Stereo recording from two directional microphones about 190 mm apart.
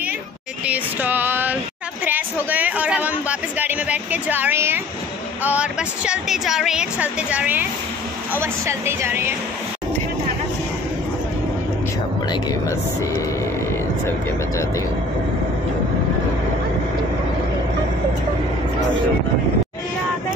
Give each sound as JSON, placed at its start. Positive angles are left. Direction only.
{"t": 0.7, "sound": "female singing", "side_deg": -10}
{"t": 2.0, "sound": "a sound", "side_deg": -10}
{"t": 5.4, "sound": "speech", "side_deg": -5}
{"t": 12.3, "sound": "speech", "side_deg": 20}